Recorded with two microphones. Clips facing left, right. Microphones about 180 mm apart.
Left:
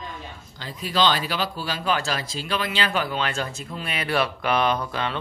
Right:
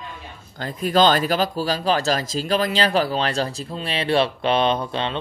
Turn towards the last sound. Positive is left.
turn(degrees=-25)  # may be behind; listen again after turning